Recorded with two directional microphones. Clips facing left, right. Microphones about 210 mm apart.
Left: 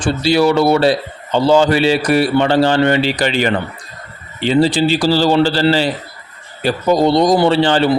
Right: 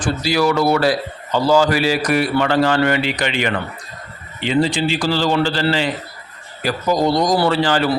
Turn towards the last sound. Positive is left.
turn(degrees=25)  # may be behind; listen again after turning